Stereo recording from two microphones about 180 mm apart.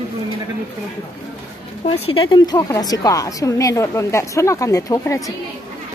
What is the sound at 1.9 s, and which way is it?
A woman's voice, 30° left (ahead or behind).